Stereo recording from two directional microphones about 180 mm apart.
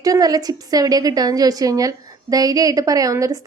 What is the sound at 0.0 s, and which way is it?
A woman's voice, 20° right (ahead or behind).